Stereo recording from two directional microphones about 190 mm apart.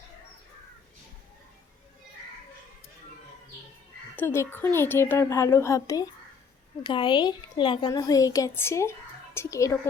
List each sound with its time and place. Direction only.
4.1 s a woman's voice: 10° left (ahead or behind)